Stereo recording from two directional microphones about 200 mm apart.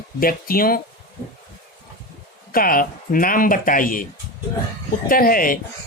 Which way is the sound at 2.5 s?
45° left (ahead or behind).